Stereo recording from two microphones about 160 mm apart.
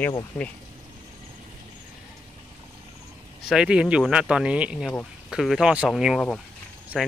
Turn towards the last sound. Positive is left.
turn(degrees=0)  # may be behind; listen again after turning